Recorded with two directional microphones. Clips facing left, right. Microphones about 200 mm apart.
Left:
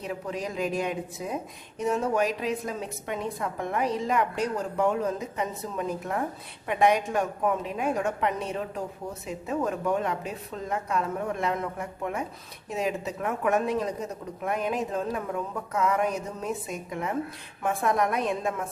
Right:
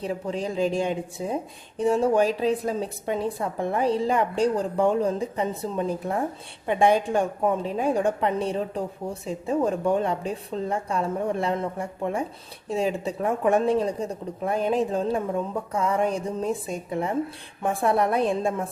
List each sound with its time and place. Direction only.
0.0 s a woman's voice: 30° right (ahead or behind)